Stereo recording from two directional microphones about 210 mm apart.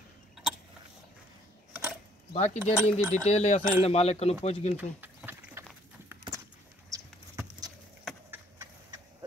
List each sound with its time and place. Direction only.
1.7 s a sound: 10° right (ahead or behind)
2.3 s speech: 35° left (ahead or behind)
2.6 s speech: 10° right (ahead or behind)
3.3 s speech: 30° left (ahead or behind)
4.7 s a sound: 10° right (ahead or behind)
6.9 s horse: 15° right (ahead or behind)
8.0 s clip-clop: centre (ahead or behind)